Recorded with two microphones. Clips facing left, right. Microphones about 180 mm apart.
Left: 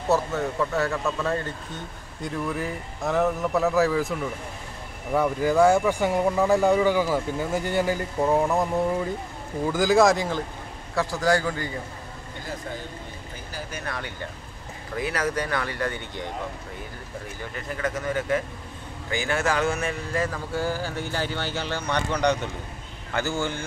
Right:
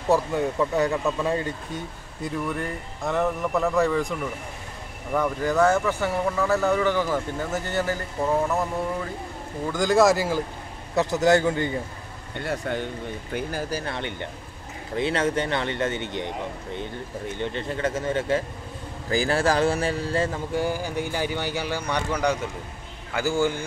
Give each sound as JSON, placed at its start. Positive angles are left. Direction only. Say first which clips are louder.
{"t": 0.1, "sound": "speech", "louder": "right 2 dB", "side_deg": -15}
{"t": 5.1, "sound": "speech", "louder": "left 2 dB", "side_deg": 10}
{"t": 9.7, "sound": "speech", "louder": "even", "side_deg": 5}
{"t": 11.0, "sound": "speech", "louder": "right 4 dB", "side_deg": -20}
{"t": 12.4, "sound": "speech", "louder": "right 7 dB", "side_deg": -70}
{"t": 13.7, "sound": "speech", "louder": "right 4 dB", "side_deg": -30}